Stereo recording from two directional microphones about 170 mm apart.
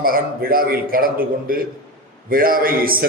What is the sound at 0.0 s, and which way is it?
A man's voice, 60° right (ahead or behind).